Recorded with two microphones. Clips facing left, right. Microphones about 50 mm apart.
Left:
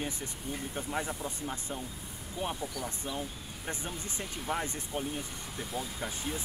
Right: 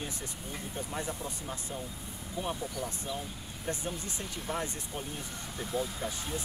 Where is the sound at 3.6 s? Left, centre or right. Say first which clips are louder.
Right 3 dB; centre.